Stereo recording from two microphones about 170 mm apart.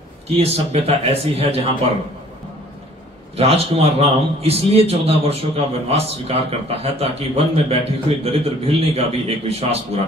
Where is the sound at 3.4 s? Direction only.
35° right (ahead or behind).